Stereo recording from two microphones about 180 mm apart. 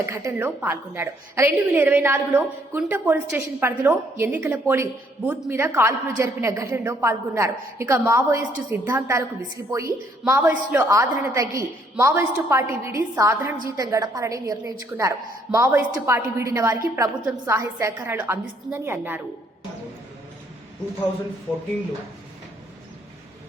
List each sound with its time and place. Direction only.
0.0 s a woman's voice: 15° right (ahead or behind)